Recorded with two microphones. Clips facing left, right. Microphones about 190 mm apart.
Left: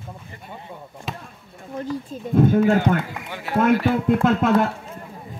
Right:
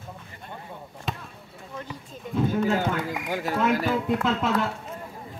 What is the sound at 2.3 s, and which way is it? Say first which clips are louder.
Speech: left 7 dB; 50° left (ahead or behind).